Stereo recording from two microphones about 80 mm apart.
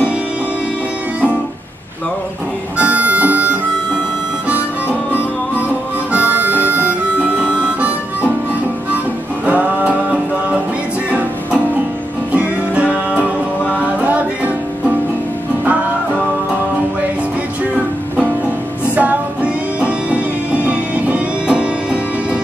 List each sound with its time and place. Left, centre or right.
2.8 s harmonica: centre
6.1 s harmonica: centre
9.5 s music: centre
11.1 s music: centre
18.9 s music: centre